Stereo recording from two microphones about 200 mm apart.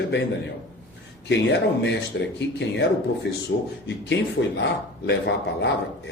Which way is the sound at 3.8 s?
60° left (ahead or behind).